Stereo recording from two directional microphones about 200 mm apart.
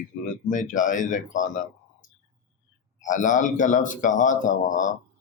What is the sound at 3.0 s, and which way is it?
Speech, 40° left (ahead or behind).